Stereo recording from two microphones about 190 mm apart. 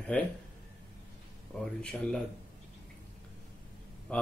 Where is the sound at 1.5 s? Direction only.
5° left (ahead or behind).